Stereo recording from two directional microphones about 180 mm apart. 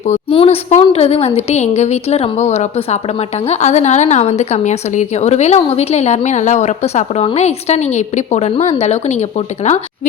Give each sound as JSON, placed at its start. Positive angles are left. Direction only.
{"t": 0.0, "sound": "a woman's voice", "side_deg": 35}